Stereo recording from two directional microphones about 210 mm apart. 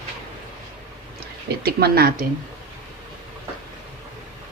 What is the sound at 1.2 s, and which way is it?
Speech, 50° right (ahead or behind).